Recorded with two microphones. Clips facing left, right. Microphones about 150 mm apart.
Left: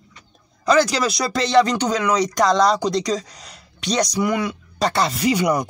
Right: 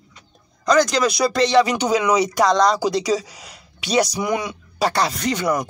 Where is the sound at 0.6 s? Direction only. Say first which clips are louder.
Right 1 dB; 5° left (ahead or behind).